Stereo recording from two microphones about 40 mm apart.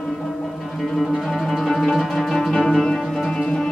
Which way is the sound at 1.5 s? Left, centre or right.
Centre.